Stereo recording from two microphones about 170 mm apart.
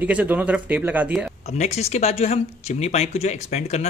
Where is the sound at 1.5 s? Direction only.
40° left (ahead or behind).